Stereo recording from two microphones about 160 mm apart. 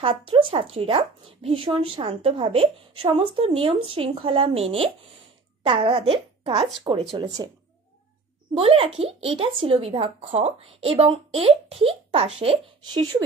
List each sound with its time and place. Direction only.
0.0 s speech: 35° right (ahead or behind)
8.5 s speech: 35° right (ahead or behind)